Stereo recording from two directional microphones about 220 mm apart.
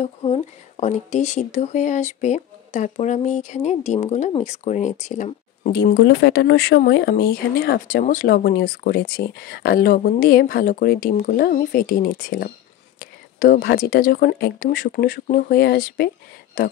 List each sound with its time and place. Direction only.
0.0 s speech: 30° left (ahead or behind)
5.8 s speech: 50° left (ahead or behind)